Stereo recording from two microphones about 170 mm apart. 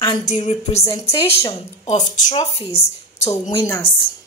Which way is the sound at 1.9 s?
45° left (ahead or behind).